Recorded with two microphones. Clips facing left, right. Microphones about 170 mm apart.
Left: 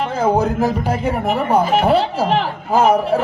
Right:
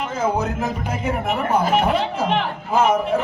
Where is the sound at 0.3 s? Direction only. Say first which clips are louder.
Left 6 dB; 35° left (ahead or behind).